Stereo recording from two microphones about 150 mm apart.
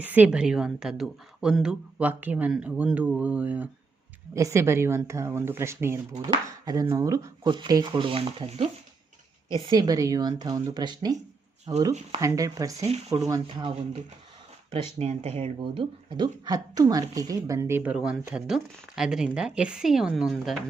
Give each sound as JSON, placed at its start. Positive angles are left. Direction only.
{"t": 0.0, "sound": "a woman's voice", "side_deg": -10}
{"t": 6.1, "sound": "speech", "side_deg": -25}
{"t": 9.6, "sound": "speech", "side_deg": -25}
{"t": 14.7, "sound": "speech", "side_deg": -40}